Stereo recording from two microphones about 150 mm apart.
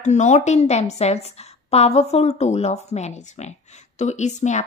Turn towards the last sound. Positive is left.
turn(degrees=50)  # may be behind; listen again after turning